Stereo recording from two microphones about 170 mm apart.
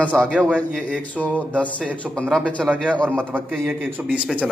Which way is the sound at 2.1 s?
5° right (ahead or behind).